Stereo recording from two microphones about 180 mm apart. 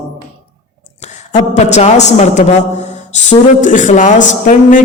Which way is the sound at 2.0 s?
40° left (ahead or behind).